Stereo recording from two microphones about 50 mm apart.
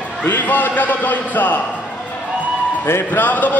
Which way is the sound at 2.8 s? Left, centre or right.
Left.